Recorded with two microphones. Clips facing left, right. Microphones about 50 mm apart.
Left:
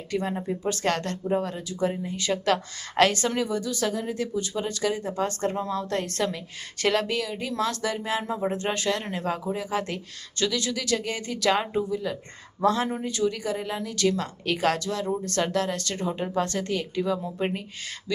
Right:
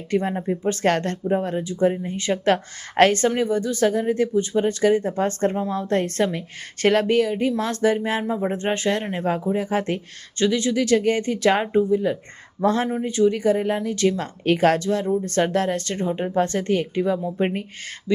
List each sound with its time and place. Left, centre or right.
0.1 s a woman's voice: right
0.3 s speech: right
0.7 s a woman's voice: right
8.2 s a woman's voice: centre; by 17.5 s right